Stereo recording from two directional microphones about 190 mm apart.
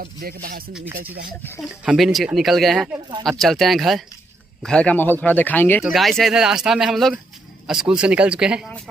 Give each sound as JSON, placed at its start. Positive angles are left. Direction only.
{"t": 0.0, "sound": "rapping", "side_deg": -50}
{"t": 1.6, "sound": "speech", "side_deg": -5}